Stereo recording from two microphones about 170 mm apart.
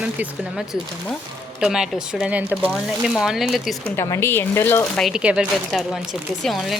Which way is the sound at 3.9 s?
15° left (ahead or behind).